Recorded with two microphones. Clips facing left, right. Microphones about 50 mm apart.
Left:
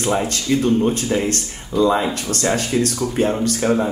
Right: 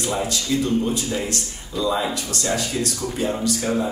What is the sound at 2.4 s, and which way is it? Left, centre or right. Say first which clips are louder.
Speech: left 6 dB; left.